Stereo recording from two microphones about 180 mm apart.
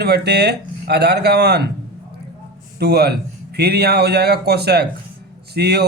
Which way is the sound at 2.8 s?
60° right (ahead or behind).